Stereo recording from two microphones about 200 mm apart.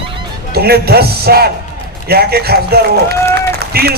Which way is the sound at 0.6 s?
50° right (ahead or behind).